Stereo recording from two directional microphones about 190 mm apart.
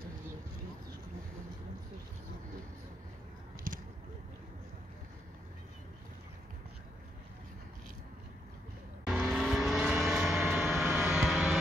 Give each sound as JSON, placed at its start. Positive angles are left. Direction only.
{"t": 3.7, "sound": "a sound", "side_deg": -50}
{"t": 9.0, "sound": "vehicle", "side_deg": -5}
{"t": 10.4, "sound": "vehicle", "side_deg": -10}